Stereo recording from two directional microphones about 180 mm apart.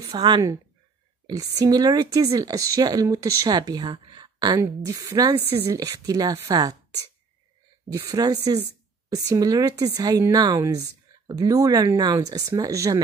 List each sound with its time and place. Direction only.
0.0 s a woman's voice: 25° right (ahead or behind)
7.9 s speech: 20° right (ahead or behind)